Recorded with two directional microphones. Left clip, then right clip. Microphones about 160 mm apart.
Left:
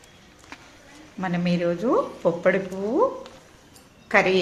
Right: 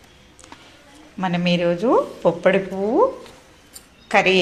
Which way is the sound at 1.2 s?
10° right (ahead or behind).